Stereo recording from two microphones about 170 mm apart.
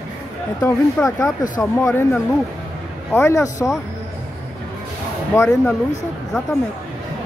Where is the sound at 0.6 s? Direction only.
15° left (ahead or behind).